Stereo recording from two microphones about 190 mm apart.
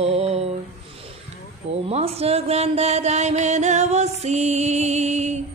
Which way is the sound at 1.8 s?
35° right (ahead or behind).